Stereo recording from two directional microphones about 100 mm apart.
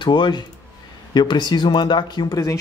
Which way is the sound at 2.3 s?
35° left (ahead or behind).